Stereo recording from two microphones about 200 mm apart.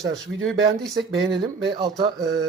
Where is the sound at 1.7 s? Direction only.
20° right (ahead or behind).